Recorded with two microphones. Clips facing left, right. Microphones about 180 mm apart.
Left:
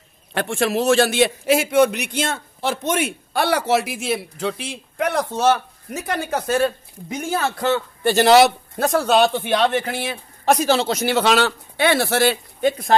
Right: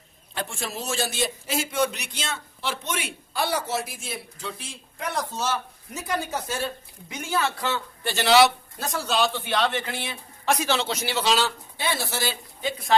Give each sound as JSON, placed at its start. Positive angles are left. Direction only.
{"t": 0.3, "sound": "a man's voice", "side_deg": 70}
{"t": 7.1, "sound": "a man's voice", "side_deg": 45}